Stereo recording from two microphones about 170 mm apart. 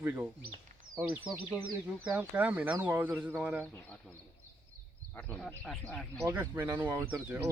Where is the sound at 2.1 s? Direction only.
10° right (ahead or behind).